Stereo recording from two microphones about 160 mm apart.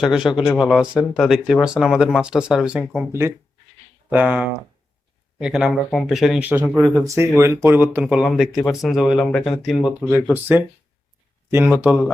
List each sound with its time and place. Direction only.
0.0 s speech: 5° right (ahead or behind)
10.3 s speech: 10° right (ahead or behind)